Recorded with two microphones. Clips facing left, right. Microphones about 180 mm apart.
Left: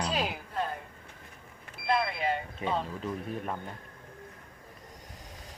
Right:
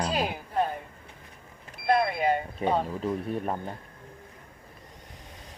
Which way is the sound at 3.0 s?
35° right (ahead or behind).